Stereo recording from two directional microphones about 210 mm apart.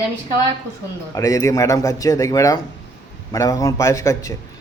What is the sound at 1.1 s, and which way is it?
A man's voice, 15° left (ahead or behind).